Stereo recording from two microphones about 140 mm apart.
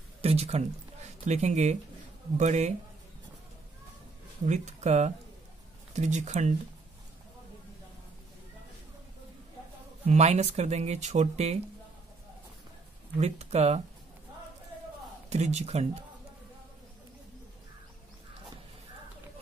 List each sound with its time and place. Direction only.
0.2 s speech: 50° right (ahead or behind)
4.5 s speech: 55° right (ahead or behind)
10.0 s speech: 50° right (ahead or behind)
13.2 s speech: 50° right (ahead or behind)
15.2 s speech: 55° right (ahead or behind)